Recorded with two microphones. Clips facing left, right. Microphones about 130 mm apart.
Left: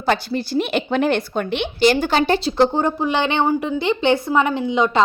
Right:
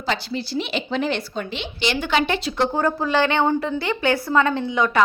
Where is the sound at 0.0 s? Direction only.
50° left (ahead or behind).